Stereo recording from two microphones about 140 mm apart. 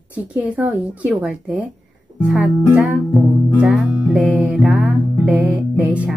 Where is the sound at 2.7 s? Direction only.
Centre (ahead or behind).